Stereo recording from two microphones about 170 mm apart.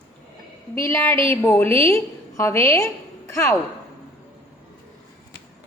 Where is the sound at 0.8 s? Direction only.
15° left (ahead or behind).